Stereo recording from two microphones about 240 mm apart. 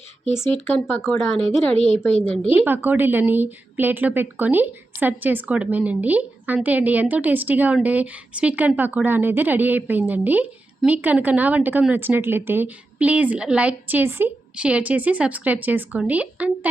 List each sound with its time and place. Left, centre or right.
0.6 s speech: centre
1.7 s a woman's voice: left
2.5 s a woman's voice: centre